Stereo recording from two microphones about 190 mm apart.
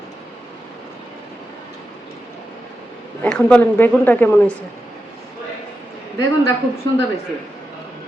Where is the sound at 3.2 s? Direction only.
5° left (ahead or behind).